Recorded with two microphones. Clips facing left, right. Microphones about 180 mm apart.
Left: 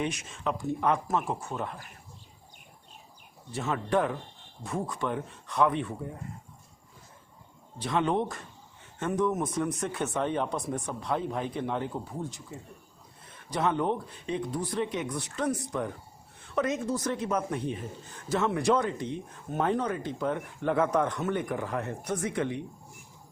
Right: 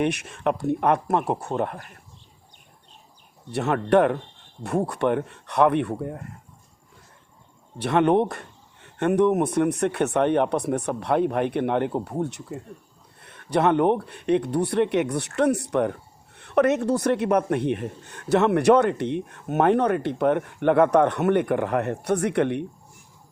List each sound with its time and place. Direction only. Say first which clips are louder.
0.0 s speech: right 8 dB; 65° right (ahead or behind)
3.5 s speech: right 8 dB; 70° right (ahead or behind)
7.8 s speech: right 8 dB; 65° right (ahead or behind)